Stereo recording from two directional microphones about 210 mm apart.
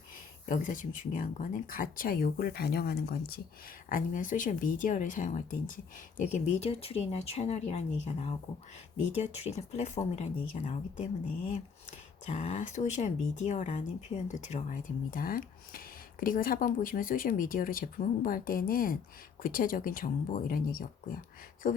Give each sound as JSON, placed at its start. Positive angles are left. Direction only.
{"t": 0.4, "sound": "speech", "side_deg": 40}